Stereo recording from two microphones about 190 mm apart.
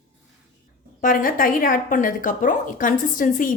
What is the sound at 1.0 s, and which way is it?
Speech, 45° left (ahead or behind).